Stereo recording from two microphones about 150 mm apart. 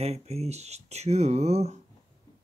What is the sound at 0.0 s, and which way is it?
Speech, 45° right (ahead or behind).